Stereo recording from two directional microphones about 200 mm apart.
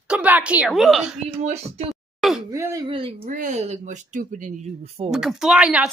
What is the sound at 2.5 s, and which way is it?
Speech, 15° right (ahead or behind).